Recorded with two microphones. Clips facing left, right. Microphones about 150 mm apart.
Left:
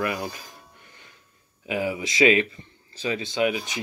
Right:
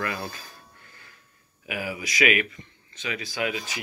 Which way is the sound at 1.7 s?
25° left (ahead or behind).